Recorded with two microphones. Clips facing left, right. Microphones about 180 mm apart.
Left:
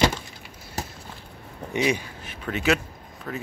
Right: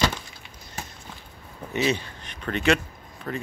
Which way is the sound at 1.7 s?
15° left (ahead or behind).